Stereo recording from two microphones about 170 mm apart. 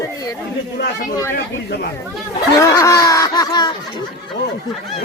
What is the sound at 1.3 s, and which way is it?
Speech, 65° left (ahead or behind).